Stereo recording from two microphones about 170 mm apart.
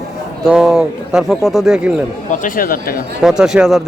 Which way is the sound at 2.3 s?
55° left (ahead or behind).